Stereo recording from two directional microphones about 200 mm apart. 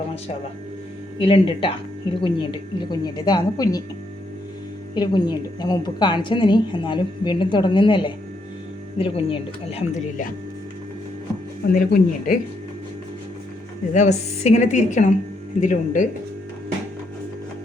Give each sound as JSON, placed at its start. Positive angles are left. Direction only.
{"t": 1.2, "sound": "a woman's voice", "side_deg": 25}
{"t": 4.9, "sound": "a woman's voice", "side_deg": 20}
{"t": 11.6, "sound": "speech", "side_deg": 50}
{"t": 13.9, "sound": "a woman's voice", "side_deg": 35}